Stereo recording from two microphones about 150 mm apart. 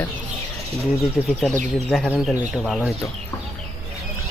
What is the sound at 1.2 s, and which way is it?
Speech, 5° left (ahead or behind).